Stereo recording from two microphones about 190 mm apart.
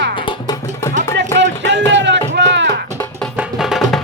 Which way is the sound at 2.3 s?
65° right (ahead or behind).